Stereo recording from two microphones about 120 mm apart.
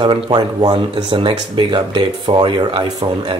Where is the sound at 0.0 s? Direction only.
40° right (ahead or behind).